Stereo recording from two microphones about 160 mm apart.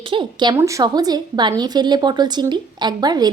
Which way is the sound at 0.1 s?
30° right (ahead or behind).